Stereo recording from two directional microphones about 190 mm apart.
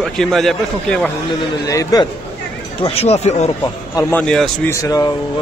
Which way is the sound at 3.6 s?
15° left (ahead or behind).